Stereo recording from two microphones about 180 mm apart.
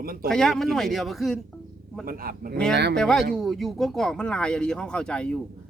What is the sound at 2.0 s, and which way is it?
Speech, 55° right (ahead or behind).